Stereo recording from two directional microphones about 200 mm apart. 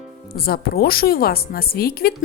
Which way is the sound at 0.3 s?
50° left (ahead or behind).